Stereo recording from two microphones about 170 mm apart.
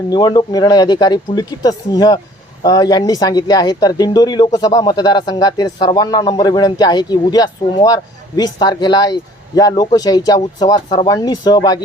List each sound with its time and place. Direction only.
0.1 s speech: 25° left (ahead or behind)